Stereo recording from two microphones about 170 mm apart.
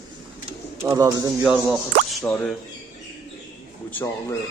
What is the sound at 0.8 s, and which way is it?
Speech, 15° right (ahead or behind).